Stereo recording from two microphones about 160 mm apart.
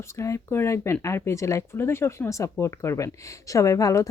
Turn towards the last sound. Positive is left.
turn(degrees=20)  # may be behind; listen again after turning